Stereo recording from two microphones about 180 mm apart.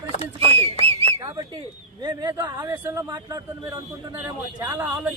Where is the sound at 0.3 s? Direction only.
35° right (ahead or behind).